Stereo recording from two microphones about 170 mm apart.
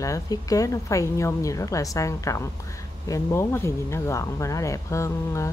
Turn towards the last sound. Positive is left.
turn(degrees=15)  # may be behind; listen again after turning